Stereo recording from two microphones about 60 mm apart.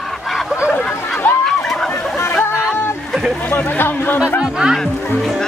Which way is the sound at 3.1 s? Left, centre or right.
Centre.